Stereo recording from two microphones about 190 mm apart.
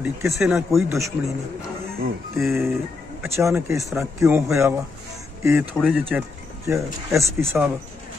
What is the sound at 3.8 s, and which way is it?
Speech, centre (ahead or behind).